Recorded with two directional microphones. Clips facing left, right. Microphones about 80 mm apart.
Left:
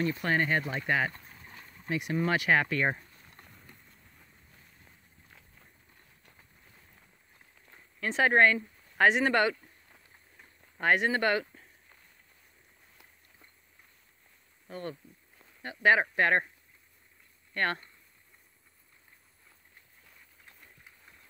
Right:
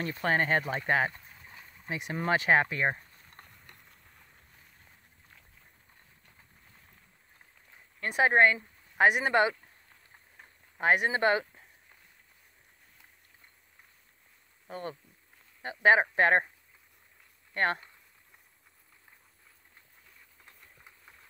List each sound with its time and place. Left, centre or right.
0.1 s speech: right
1.2 s boat: centre
1.9 s speech: right
2.8 s speech: centre
3.4 s a sound: right
8.1 s speech: centre
10.8 s speech: centre
14.7 s speech: right
17.6 s speech: right